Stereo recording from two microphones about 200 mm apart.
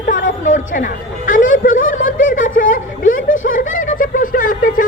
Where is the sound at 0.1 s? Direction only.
40° left (ahead or behind).